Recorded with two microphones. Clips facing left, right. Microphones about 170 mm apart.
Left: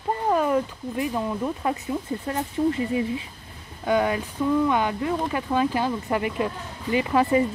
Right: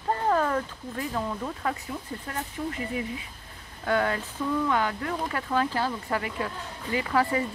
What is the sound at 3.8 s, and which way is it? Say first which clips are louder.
Speech: left 4 dB; 15° left (ahead or behind).